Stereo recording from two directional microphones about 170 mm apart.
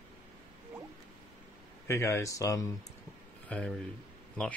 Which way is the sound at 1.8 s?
15° left (ahead or behind).